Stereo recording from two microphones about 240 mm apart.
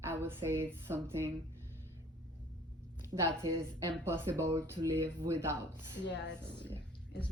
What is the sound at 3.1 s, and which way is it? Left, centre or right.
Speech, centre.